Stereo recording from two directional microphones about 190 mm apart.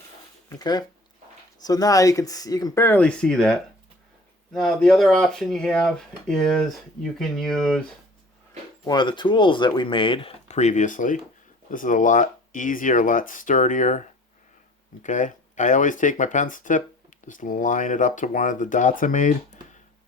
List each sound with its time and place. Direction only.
0.5 s speech: 20° left (ahead or behind); by 7.8 s centre (ahead or behind)
8.9 s speech: 25° left (ahead or behind); by 14.0 s 40° left (ahead or behind)
15.0 s speech: 40° left (ahead or behind)